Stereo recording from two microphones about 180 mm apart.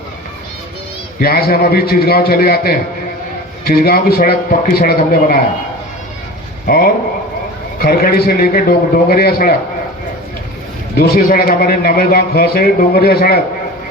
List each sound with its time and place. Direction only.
1.2 s a man's voice: 55° left (ahead or behind)
6.7 s a man's voice: 55° left (ahead or behind)
10.9 s a man's voice: 55° left (ahead or behind)